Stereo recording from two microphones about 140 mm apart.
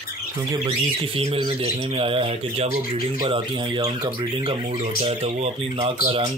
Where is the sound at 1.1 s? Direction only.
45° right (ahead or behind).